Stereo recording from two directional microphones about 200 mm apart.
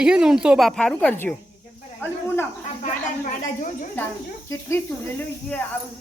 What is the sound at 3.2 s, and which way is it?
Speech, 40° left (ahead or behind).